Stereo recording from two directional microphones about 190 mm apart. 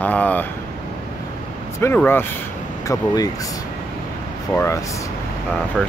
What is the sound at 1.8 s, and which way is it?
Speech, 10° left (ahead or behind).